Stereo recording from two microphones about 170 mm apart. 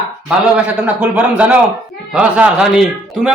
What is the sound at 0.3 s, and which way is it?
A man's voice, 10° right (ahead or behind).